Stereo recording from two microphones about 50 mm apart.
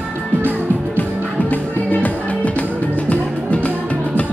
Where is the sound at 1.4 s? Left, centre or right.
Left.